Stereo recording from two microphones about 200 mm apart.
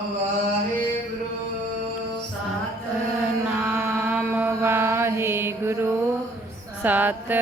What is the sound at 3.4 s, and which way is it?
Mantra, 10° right (ahead or behind).